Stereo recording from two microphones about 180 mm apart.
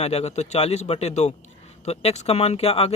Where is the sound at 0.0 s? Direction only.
35° left (ahead or behind).